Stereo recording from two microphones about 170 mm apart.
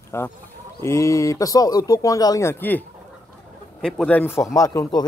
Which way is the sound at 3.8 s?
5° left (ahead or behind).